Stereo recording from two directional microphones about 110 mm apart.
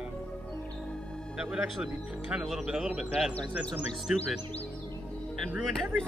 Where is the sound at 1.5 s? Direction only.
5° right (ahead or behind).